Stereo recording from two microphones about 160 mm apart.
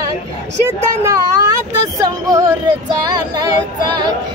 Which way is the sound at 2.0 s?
20° right (ahead or behind).